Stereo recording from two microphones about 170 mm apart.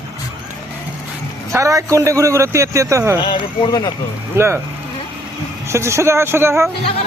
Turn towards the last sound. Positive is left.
turn(degrees=-15)  # may be behind; listen again after turning